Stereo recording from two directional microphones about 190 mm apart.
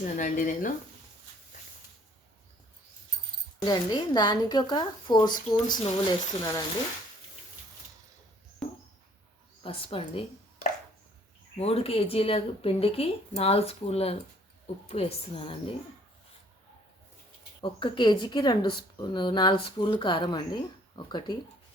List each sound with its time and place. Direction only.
0.0 s speech: 45° left (ahead or behind)
3.6 s speech: 20° left (ahead or behind)
9.6 s a woman's voice: 30° left (ahead or behind)
17.6 s speech: 25° left (ahead or behind)